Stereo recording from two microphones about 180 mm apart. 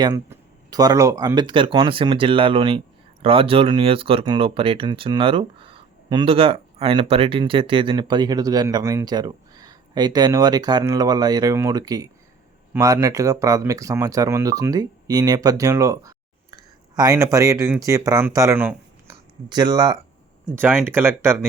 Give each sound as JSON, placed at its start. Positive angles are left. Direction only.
{"t": 0.0, "sound": "speech", "side_deg": -20}
{"t": 19.5, "sound": "speech", "side_deg": -25}
{"t": 20.5, "sound": "speech", "side_deg": -10}